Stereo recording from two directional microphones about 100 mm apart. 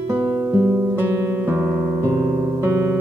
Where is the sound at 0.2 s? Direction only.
30° right (ahead or behind).